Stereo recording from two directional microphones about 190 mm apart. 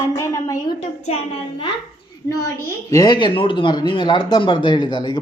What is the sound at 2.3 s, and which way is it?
Speech, 15° left (ahead or behind).